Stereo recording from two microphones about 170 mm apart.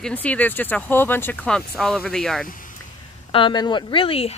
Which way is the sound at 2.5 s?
50° left (ahead or behind).